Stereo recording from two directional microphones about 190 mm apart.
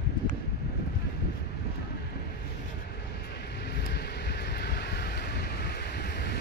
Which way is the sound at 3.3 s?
60° left (ahead or behind).